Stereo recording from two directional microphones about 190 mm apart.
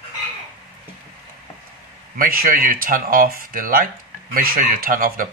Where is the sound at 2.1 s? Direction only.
50° right (ahead or behind).